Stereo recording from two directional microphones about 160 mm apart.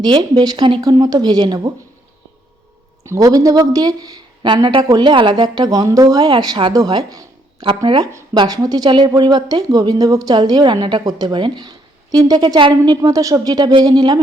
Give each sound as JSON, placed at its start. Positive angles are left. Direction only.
{"t": 0.0, "sound": "speech", "side_deg": -25}
{"t": 3.0, "sound": "speech", "side_deg": -20}